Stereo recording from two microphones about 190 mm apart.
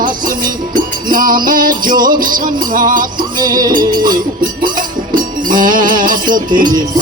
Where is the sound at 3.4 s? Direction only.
20° right (ahead or behind).